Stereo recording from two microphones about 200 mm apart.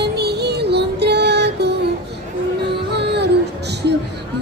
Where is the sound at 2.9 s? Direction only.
55° right (ahead or behind).